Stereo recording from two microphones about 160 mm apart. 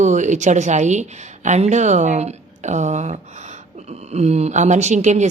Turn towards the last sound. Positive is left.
turn(degrees=-45)  # may be behind; listen again after turning